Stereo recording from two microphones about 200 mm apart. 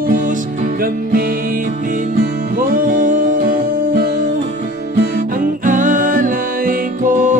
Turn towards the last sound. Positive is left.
turn(degrees=-40)  # may be behind; listen again after turning